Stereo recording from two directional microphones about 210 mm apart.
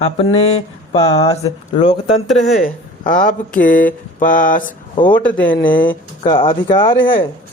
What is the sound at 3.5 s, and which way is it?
Mantra, 40° left (ahead or behind).